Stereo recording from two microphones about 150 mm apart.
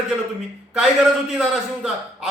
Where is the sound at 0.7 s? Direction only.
5° right (ahead or behind).